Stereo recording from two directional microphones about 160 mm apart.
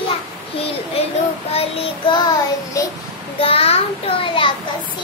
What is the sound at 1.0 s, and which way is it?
Child singing, 35° left (ahead or behind).